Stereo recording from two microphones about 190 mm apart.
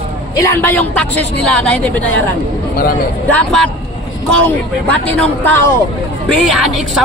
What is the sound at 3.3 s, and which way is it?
A man's voice, 5° left (ahead or behind).